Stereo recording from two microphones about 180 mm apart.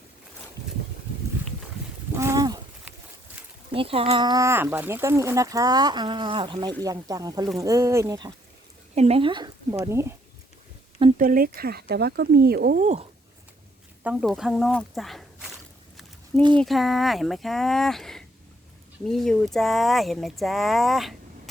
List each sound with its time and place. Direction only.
2.1 s a sound: 15° right (ahead or behind)
3.7 s speech: 30° right (ahead or behind)
9.0 s speech: 35° right (ahead or behind); by 10.2 s 15° right (ahead or behind)
11.2 s speech: 50° right (ahead or behind)
12.8 s speech: 40° right (ahead or behind)
14.0 s speech: 5° right (ahead or behind)
16.4 s speech: 25° right (ahead or behind)
16.6 s speech: centre (ahead or behind)